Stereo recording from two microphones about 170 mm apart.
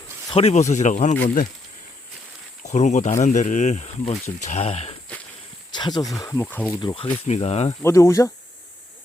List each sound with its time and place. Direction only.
0.3 s speech: 35° left (ahead or behind)
2.6 s speech: 45° left (ahead or behind)
5.7 s speech: 25° left (ahead or behind)
6.8 s speech: 30° left (ahead or behind)
7.8 s speech: 15° left (ahead or behind)